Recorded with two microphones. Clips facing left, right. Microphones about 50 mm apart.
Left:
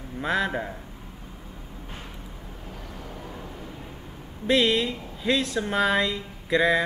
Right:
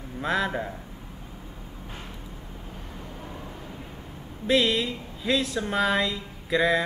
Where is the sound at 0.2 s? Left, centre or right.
Centre.